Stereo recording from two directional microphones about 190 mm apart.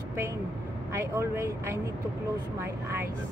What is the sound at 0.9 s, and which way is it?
Speech, 15° right (ahead or behind).